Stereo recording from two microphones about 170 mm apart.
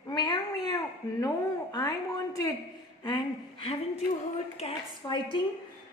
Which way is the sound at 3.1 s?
30° left (ahead or behind).